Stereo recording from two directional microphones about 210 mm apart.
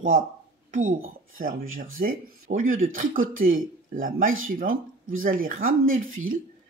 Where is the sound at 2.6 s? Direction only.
75° right (ahead or behind).